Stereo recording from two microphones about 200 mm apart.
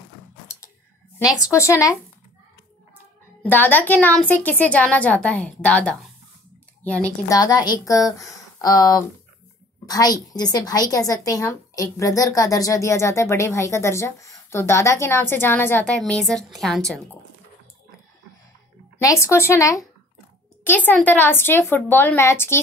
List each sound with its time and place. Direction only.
1.2 s a woman's voice: 15° left (ahead or behind)
3.4 s a woman's voice: 10° left (ahead or behind)
7.3 s a woman's voice: 20° left (ahead or behind); by 17.0 s centre (ahead or behind)
18.9 s a woman's voice: 15° left (ahead or behind)